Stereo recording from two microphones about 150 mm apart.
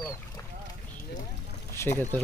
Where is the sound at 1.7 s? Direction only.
15° left (ahead or behind).